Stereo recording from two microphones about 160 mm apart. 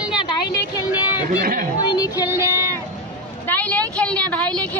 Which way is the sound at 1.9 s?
25° left (ahead or behind).